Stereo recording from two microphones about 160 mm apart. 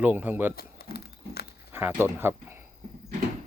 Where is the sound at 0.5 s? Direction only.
75° left (ahead or behind).